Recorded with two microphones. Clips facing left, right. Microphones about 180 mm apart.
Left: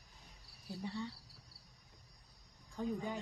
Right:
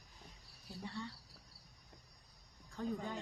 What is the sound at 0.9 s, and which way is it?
Speech, 15° left (ahead or behind).